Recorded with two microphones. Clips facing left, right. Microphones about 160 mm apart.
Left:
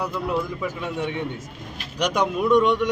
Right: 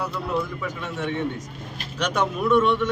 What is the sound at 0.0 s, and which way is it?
A man's voice, 15° left (ahead or behind).